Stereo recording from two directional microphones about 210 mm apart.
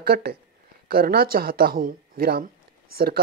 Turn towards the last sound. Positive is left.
turn(degrees=-45)  # may be behind; listen again after turning